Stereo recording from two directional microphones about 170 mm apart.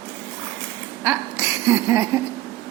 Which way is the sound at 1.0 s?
15° right (ahead or behind).